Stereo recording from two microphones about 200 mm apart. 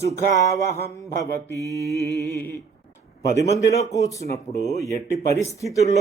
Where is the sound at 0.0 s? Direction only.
15° left (ahead or behind).